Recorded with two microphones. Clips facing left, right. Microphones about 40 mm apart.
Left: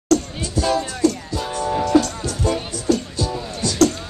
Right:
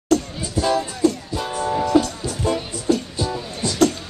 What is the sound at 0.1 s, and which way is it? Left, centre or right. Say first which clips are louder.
Music: left 1 dB; centre.